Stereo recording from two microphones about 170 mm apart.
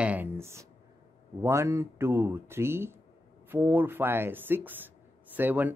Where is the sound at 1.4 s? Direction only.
15° right (ahead or behind).